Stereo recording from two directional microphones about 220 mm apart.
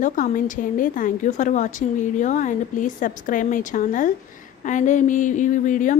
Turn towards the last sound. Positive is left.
turn(degrees=35)  # may be behind; listen again after turning